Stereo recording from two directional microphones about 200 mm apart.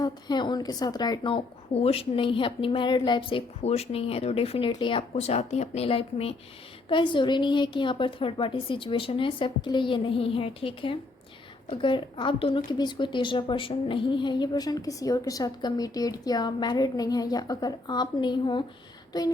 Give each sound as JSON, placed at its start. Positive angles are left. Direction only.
{"t": 0.0, "sound": "a woman's voice", "side_deg": 20}